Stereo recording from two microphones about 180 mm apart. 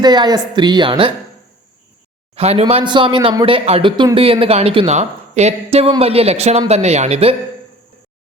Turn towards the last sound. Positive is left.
turn(degrees=-35)  # may be behind; listen again after turning